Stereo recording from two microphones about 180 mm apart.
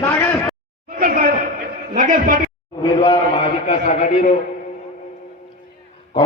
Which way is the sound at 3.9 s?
40° left (ahead or behind).